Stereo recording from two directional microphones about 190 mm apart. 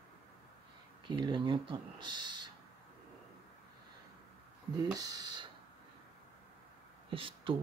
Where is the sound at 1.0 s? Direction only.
25° right (ahead or behind).